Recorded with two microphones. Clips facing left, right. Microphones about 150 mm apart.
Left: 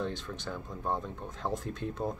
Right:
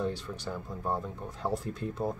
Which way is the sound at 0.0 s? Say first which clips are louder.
Right 2 dB; 10° right (ahead or behind).